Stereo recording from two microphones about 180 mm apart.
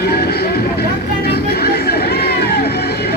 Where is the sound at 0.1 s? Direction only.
60° left (ahead or behind).